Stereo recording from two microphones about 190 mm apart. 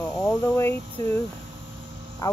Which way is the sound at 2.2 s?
20° left (ahead or behind).